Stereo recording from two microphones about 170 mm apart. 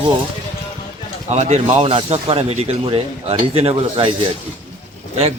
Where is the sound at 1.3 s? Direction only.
40° right (ahead or behind).